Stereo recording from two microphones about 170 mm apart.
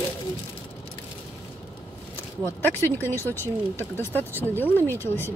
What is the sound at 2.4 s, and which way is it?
Speech, 15° left (ahead or behind).